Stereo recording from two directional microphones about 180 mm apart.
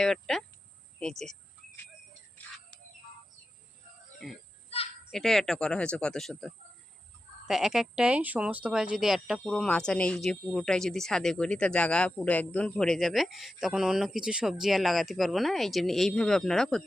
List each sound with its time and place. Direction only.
0.0 s speech: centre (ahead or behind)
4.2 s speech: centre (ahead or behind)
4.7 s children playing: 35° left (ahead or behind)
5.1 s speech: centre (ahead or behind)